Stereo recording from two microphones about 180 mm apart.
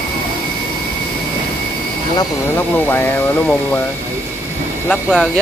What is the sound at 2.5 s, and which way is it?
Speech, 10° left (ahead or behind).